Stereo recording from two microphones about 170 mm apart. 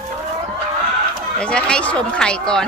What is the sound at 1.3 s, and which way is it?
Speech, 5° left (ahead or behind).